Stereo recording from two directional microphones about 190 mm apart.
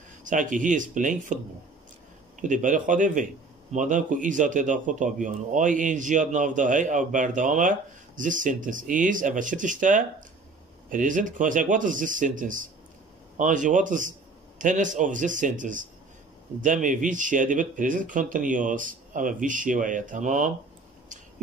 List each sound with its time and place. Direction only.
0.2 s speech: 45° right (ahead or behind)
2.4 s a man's voice: 45° right (ahead or behind)